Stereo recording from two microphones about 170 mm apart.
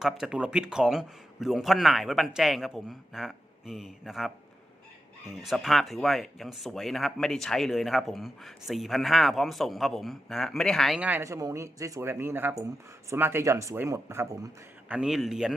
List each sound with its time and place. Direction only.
0.0 s speech: 5° right (ahead or behind)
5.4 s speech: centre (ahead or behind)